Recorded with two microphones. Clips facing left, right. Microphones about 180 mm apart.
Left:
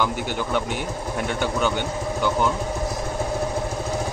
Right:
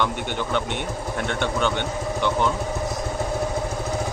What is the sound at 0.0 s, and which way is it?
A man's voice, 5° left (ahead or behind).